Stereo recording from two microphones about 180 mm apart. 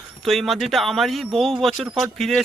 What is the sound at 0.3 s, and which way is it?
Speech, centre (ahead or behind).